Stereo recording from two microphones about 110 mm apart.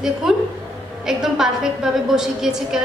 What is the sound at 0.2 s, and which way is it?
A woman's voice, 5° right (ahead or behind).